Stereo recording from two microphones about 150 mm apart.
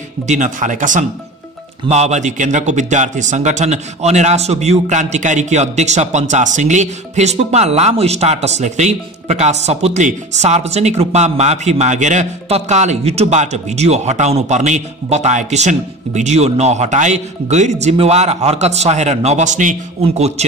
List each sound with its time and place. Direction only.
0.3 s speech: 55° right (ahead or behind)
1.9 s speech: 50° right (ahead or behind)